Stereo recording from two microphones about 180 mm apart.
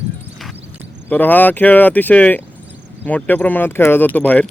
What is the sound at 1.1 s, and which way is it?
Speech, 10° left (ahead or behind).